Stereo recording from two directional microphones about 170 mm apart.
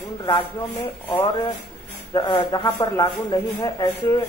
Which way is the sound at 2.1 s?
25° left (ahead or behind).